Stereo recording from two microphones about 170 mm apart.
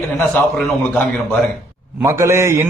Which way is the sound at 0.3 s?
5° left (ahead or behind).